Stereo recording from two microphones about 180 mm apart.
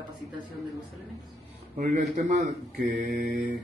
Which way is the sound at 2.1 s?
40° right (ahead or behind).